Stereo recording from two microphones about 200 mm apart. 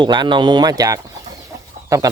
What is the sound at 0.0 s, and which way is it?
Speech, 25° right (ahead or behind).